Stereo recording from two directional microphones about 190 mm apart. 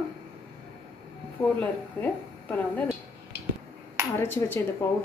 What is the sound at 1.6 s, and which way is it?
A woman's voice, 10° left (ahead or behind).